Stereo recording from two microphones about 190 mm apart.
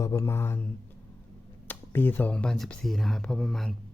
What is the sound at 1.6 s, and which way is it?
Speech, 10° left (ahead or behind).